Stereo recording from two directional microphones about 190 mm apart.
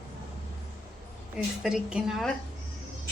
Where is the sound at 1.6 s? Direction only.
5° right (ahead or behind).